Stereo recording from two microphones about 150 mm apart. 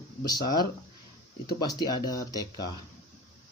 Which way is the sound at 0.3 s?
25° left (ahead or behind).